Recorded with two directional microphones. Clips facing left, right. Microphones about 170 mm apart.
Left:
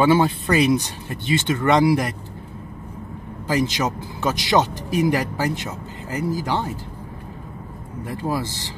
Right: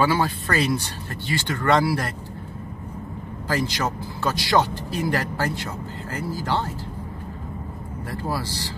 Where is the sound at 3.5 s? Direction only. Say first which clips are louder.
Left 3 dB; 20° left (ahead or behind).